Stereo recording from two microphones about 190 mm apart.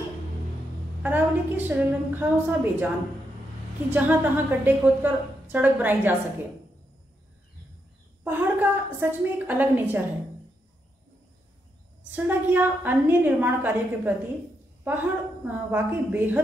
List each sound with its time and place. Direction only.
1.0 s a woman's voice: 10° right (ahead or behind)
3.9 s a woman's voice: 10° right (ahead or behind)
8.2 s a woman's voice: 10° right (ahead or behind)
12.1 s a woman's voice: 10° right (ahead or behind)